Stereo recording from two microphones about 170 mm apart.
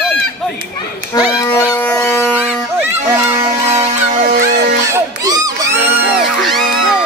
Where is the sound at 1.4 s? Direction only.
10° left (ahead or behind).